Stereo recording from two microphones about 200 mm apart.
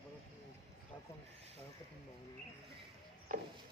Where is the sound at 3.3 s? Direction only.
40° right (ahead or behind).